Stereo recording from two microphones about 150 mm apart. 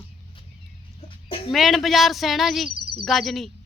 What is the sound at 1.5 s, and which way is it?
Speech, centre (ahead or behind).